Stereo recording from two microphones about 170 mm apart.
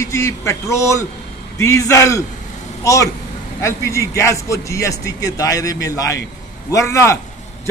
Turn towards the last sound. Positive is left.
turn(degrees=15)  # may be behind; listen again after turning